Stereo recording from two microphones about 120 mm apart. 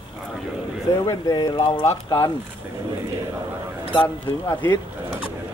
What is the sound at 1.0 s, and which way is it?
Speech, 30° left (ahead or behind).